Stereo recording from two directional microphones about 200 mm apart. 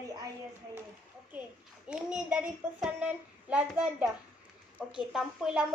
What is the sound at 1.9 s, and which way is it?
A woman's voice, 5° right (ahead or behind).